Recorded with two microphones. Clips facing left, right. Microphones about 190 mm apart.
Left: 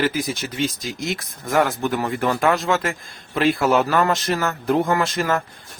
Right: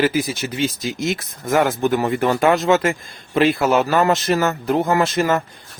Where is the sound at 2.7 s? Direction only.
5° right (ahead or behind).